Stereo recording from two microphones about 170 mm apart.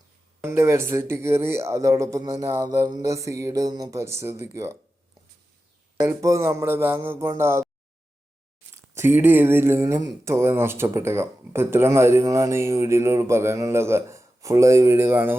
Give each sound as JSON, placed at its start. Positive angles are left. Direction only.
{"t": 0.4, "sound": "speech", "side_deg": -15}
{"t": 6.1, "sound": "speech", "side_deg": -15}
{"t": 8.7, "sound": "speech", "side_deg": -15}